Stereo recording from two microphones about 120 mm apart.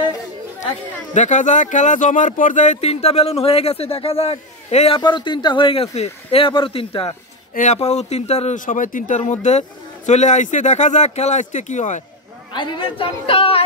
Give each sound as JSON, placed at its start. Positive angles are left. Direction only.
{"t": 1.1, "sound": "speech", "side_deg": 90}
{"t": 4.9, "sound": "speech", "side_deg": 40}
{"t": 7.5, "sound": "speech", "side_deg": 80}
{"t": 9.2, "sound": "speech", "side_deg": 75}
{"t": 12.5, "sound": "speech", "side_deg": 40}